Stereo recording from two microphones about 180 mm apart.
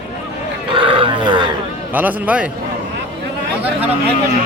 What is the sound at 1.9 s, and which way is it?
Speech, 10° right (ahead or behind).